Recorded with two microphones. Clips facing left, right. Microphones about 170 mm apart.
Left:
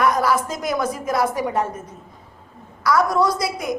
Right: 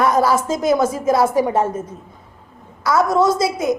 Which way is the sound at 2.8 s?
25° right (ahead or behind).